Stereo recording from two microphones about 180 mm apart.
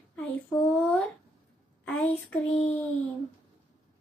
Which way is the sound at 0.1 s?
5° left (ahead or behind).